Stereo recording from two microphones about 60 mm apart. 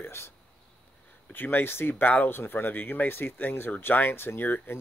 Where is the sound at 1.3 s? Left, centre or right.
Left.